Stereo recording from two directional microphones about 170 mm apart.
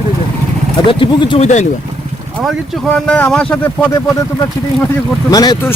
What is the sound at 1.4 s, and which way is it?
Speech, 45° left (ahead or behind).